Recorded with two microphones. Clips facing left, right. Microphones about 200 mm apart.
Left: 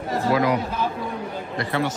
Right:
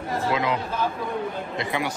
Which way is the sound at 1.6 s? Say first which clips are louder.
Left 4 dB; 15° right (ahead or behind).